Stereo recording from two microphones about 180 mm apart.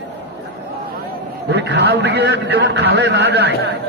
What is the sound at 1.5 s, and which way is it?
A man's voice, 70° right (ahead or behind).